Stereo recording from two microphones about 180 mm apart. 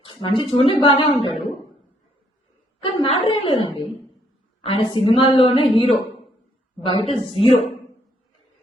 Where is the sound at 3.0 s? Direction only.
30° left (ahead or behind).